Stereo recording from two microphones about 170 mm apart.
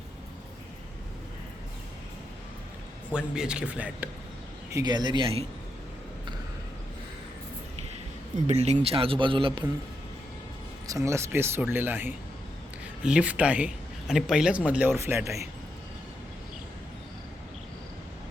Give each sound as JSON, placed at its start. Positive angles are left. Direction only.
{"t": 3.1, "sound": "speech", "side_deg": -5}
{"t": 4.7, "sound": "speech", "side_deg": -25}
{"t": 8.4, "sound": "a man's voice", "side_deg": -40}
{"t": 10.8, "sound": "speech", "side_deg": -20}